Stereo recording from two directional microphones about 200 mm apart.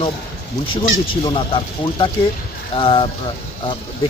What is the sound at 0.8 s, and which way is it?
Speech, 25° left (ahead or behind).